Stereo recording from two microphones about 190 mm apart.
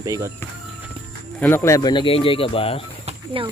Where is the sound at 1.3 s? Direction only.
10° left (ahead or behind); by 2.8 s 30° left (ahead or behind).